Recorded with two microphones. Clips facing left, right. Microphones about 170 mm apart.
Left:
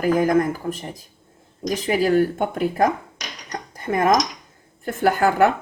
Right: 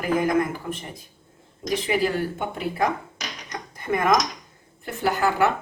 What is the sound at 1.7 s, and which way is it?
A woman's voice, 45° left (ahead or behind).